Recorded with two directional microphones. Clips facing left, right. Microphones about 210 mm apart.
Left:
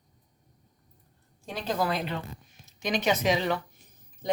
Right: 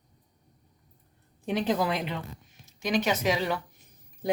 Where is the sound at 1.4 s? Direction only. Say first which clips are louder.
Right 3 dB; 20° right (ahead or behind).